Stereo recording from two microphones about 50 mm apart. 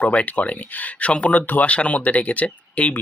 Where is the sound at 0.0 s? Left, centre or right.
Left.